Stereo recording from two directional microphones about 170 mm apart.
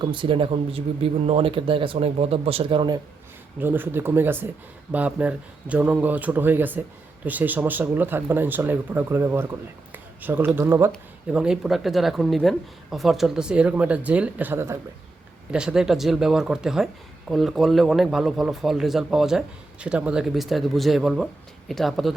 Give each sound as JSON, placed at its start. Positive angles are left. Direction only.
{"t": 0.0, "sound": "speech", "side_deg": -30}
{"t": 3.6, "sound": "speech", "side_deg": -10}
{"t": 11.3, "sound": "speech", "side_deg": -5}
{"t": 15.5, "sound": "speech", "side_deg": -5}